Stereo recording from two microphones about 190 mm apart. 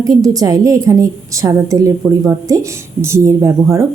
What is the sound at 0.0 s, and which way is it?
A woman's voice, 20° right (ahead or behind).